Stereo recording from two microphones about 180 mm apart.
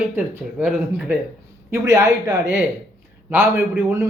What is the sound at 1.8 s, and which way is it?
A man's voice, 20° right (ahead or behind).